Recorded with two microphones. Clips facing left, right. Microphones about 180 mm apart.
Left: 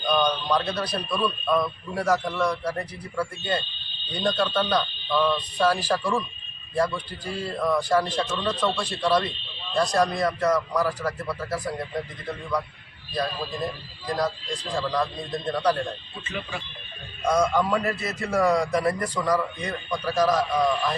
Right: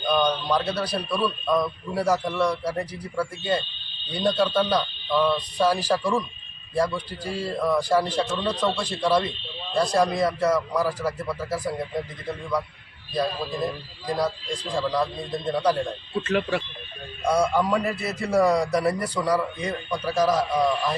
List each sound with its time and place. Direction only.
0.1 s a man's voice: 10° right (ahead or behind)
14.2 s a man's voice: 10° right (ahead or behind)
16.2 s speech: 75° right (ahead or behind)
17.2 s a man's voice: 10° right (ahead or behind)